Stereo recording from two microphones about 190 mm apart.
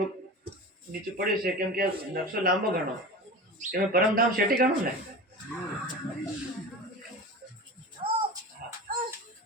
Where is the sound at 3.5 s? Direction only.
50° right (ahead or behind).